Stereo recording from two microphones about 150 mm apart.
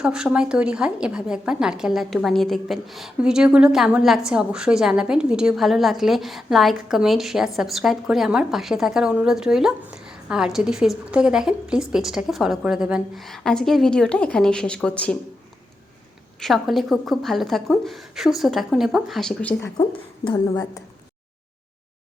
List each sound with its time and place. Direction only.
0.0 s a woman's voice: 5° right (ahead or behind)
16.4 s a woman's voice: centre (ahead or behind)
19.7 s a woman's voice: 30° left (ahead or behind)